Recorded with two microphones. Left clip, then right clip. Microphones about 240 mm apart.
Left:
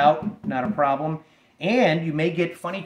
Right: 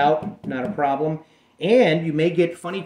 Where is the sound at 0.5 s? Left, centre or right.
Left.